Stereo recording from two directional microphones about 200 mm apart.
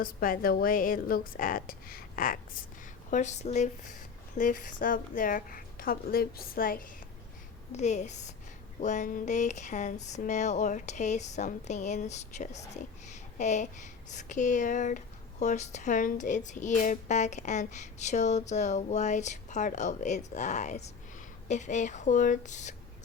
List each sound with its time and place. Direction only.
0.0 s a woman's voice: 45° left (ahead or behind)
7.7 s speech: 35° left (ahead or behind)